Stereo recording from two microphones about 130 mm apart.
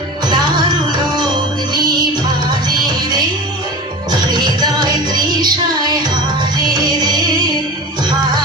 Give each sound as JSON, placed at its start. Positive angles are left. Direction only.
{"t": 4.1, "sound": "music", "side_deg": -35}